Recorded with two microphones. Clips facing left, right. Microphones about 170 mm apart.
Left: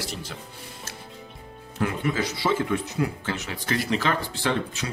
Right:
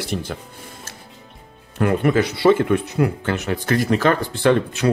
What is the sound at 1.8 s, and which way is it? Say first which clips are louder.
Speech: right 8 dB; 60° right (ahead or behind).